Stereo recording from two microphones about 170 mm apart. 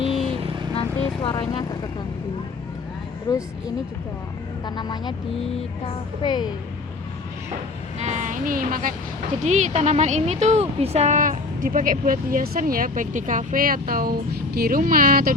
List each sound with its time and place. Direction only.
0.7 s vehicle: 30° left (ahead or behind)
3.3 s speech: 20° left (ahead or behind)
4.6 s speech: 25° left (ahead or behind)
6.2 s speech: 25° left (ahead or behind)
7.9 s speech: 45° right (ahead or behind)